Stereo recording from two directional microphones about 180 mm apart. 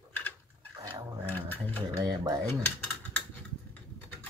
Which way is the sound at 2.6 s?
10° left (ahead or behind).